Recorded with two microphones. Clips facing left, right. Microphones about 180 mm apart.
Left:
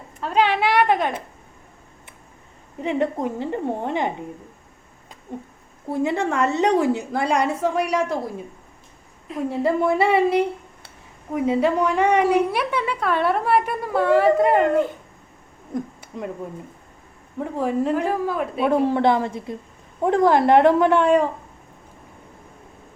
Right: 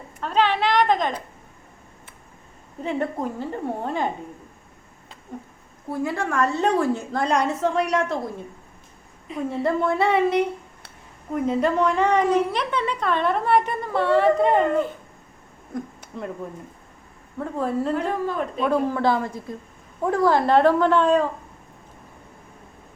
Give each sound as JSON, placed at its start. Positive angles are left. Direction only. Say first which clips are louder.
{"t": 0.2, "sound": "a woman's voice", "louder": "left 1 dB", "side_deg": 10}
{"t": 2.8, "sound": "a woman's voice", "louder": "left 3 dB", "side_deg": 20}
{"t": 5.9, "sound": "a woman's voice", "louder": "left 3 dB", "side_deg": 20}
{"t": 7.2, "sound": "a woman's voice", "louder": "even", "side_deg": 5}
{"t": 9.2, "sound": "a woman's voice", "louder": "left 2 dB", "side_deg": 0}
{"t": 16.0, "sound": "a sound", "louder": "left 2 dB", "side_deg": 10}
{"t": 17.4, "sound": "a woman's voice", "louder": "left 2 dB", "side_deg": 15}
{"t": 18.7, "sound": "a woman's voice", "louder": "left 3 dB", "side_deg": 25}